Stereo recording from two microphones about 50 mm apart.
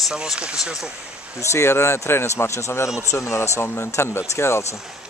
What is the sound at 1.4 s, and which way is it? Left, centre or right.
Speech, left.